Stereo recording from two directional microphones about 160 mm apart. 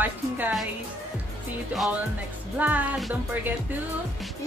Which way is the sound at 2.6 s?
10° right (ahead or behind).